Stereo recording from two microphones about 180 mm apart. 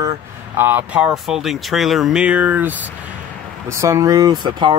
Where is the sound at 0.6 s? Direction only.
10° right (ahead or behind).